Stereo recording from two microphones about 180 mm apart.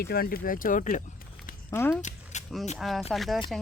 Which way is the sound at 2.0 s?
40° left (ahead or behind).